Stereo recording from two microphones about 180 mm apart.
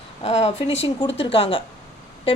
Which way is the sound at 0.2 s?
35° left (ahead or behind).